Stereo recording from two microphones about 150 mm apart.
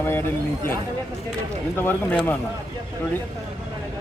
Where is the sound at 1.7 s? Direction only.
15° left (ahead or behind).